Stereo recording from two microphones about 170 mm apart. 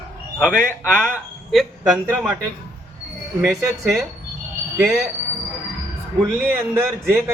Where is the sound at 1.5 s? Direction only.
Centre (ahead or behind).